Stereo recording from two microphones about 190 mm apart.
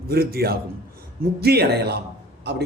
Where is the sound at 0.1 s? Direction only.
55° right (ahead or behind).